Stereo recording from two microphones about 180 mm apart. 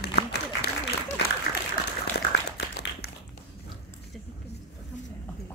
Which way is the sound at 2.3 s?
60° left (ahead or behind).